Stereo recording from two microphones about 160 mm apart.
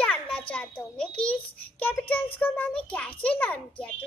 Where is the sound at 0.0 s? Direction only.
10° left (ahead or behind).